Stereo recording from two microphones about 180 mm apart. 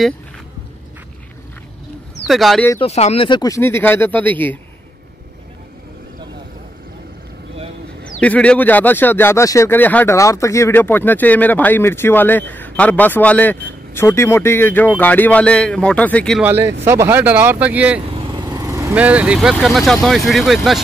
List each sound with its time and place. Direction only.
2.2 s speech: centre (ahead or behind)
2.8 s speech: 35° left (ahead or behind); by 4.6 s 10° left (ahead or behind)
8.2 s speech: 5° left (ahead or behind)
16.4 s speech: 15° right (ahead or behind)
18.2 s vehicle: 20° right (ahead or behind)
18.9 s speech: 5° right (ahead or behind)